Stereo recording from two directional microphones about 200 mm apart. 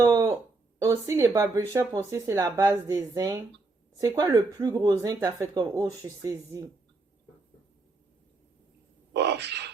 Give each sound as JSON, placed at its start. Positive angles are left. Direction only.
{"t": 0.0, "sound": "a sound", "side_deg": -15}
{"t": 0.8, "sound": "speech", "side_deg": -15}
{"t": 9.1, "sound": "speech", "side_deg": -60}